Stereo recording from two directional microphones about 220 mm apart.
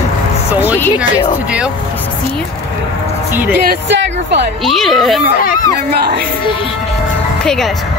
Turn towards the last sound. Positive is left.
turn(degrees=-45)  # may be behind; listen again after turning